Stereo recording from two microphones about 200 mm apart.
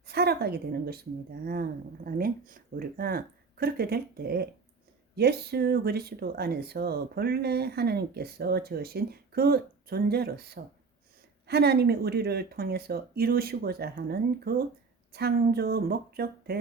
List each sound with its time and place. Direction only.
0.1 s a woman's voice: 50° right (ahead or behind)
2.0 s speech: 45° right (ahead or behind)